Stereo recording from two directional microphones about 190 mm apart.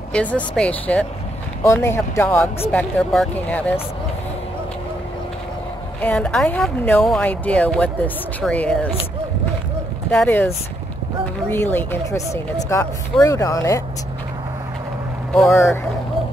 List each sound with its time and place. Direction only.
0.1 s a woman's voice: 5° left (ahead or behind)
5.9 s speech: 5° left (ahead or behind)
10.1 s speech: 10° left (ahead or behind)
11.5 s speech: 10° left (ahead or behind)